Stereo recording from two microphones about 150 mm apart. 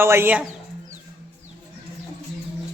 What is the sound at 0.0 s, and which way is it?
Speech, 15° right (ahead or behind).